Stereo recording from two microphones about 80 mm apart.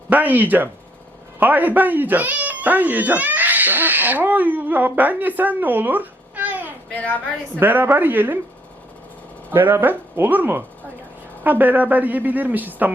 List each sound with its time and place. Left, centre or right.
0.1 s a woman's voice: right
6.9 s a woman's voice: centre
7.6 s a woman's voice: right
9.5 s a woman's voice: right